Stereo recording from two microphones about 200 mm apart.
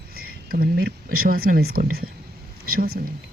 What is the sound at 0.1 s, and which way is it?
Speech, 50° right (ahead or behind).